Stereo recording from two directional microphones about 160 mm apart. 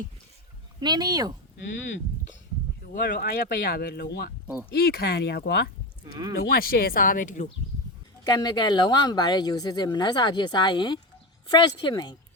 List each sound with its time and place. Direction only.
0.8 s speech: 25° right (ahead or behind)
2.9 s speech: 70° left (ahead or behind)
4.7 s speech: 70° left (ahead or behind); by 5.4 s 90° left
6.3 s speech: 70° left (ahead or behind); by 7.5 s 55° left (ahead or behind)
8.2 s speech: 25° left (ahead or behind)